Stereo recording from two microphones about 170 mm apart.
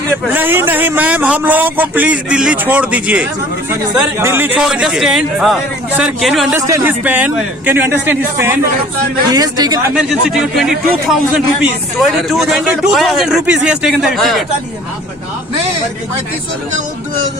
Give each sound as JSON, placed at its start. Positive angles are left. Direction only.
{"t": 0.3, "sound": "a man's voice", "side_deg": -10}
{"t": 6.6, "sound": "a man's voice", "side_deg": -15}
{"t": 9.3, "sound": "a man's voice", "side_deg": -20}
{"t": 9.9, "sound": "speech", "side_deg": -5}